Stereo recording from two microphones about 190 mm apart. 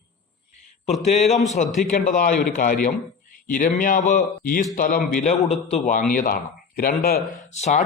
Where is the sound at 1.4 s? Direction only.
35° left (ahead or behind).